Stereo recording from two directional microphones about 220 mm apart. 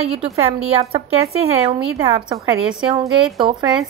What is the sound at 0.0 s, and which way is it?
A woman's voice, 25° right (ahead or behind).